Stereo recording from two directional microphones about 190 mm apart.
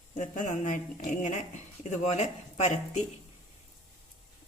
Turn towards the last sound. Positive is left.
turn(degrees=35)  # may be behind; listen again after turning